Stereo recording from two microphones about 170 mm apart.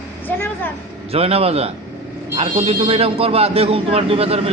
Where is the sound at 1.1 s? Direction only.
35° right (ahead or behind).